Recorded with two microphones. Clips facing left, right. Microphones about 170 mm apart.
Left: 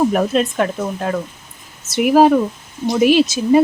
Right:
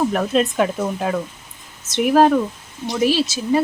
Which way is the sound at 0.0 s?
10° left (ahead or behind).